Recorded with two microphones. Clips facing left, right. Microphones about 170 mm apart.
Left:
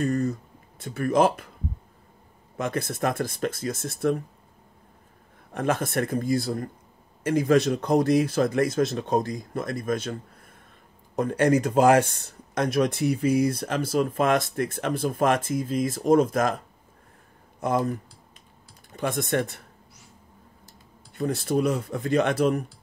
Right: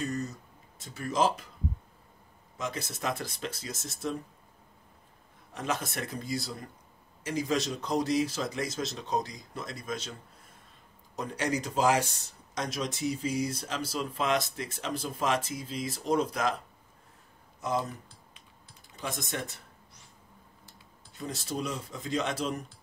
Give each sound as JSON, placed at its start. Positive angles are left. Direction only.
{"t": 0.0, "sound": "speech", "side_deg": 55}
{"t": 2.5, "sound": "speech", "side_deg": 55}
{"t": 5.5, "sound": "speech", "side_deg": 55}
{"t": 11.1, "sound": "speech", "side_deg": 55}
{"t": 18.9, "sound": "speech", "side_deg": 60}
{"t": 21.1, "sound": "speech", "side_deg": 60}